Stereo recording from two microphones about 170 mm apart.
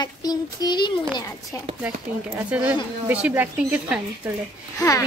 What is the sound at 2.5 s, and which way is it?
Speech, 5° right (ahead or behind).